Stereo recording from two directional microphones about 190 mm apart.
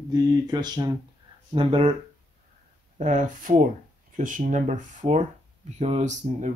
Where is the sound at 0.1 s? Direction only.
20° right (ahead or behind).